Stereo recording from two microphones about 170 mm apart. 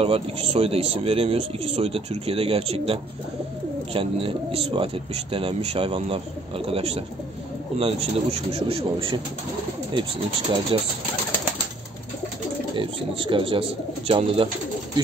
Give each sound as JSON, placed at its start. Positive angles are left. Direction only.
{"t": 0.0, "sound": "speech", "side_deg": -35}
{"t": 10.7, "sound": "speech", "side_deg": -30}
{"t": 12.7, "sound": "speech", "side_deg": -30}